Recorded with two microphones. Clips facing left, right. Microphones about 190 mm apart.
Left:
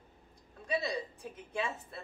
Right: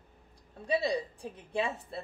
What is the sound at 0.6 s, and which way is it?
A woman's voice, 30° right (ahead or behind).